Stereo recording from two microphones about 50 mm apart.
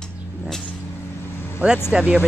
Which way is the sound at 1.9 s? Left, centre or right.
Centre.